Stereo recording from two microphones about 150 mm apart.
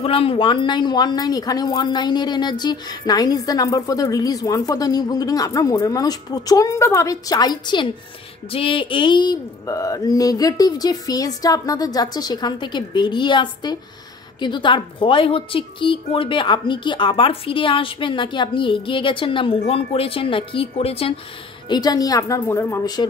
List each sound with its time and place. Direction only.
0.0 s a woman's voice: 40° left (ahead or behind)
21.6 s a woman's voice: 25° left (ahead or behind)